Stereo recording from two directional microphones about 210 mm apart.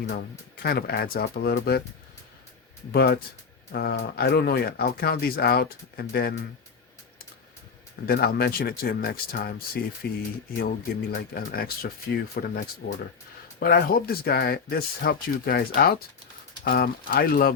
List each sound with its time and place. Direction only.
0.1 s speech: 45° left (ahead or behind)
2.9 s speech: 50° left (ahead or behind)
8.0 s speech: 45° left (ahead or behind)